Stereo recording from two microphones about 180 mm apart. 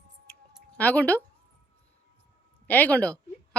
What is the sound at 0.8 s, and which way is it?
Speech, 10° left (ahead or behind).